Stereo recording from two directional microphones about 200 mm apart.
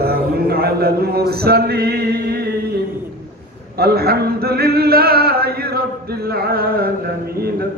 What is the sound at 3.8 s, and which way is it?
Male singing, 50° right (ahead or behind).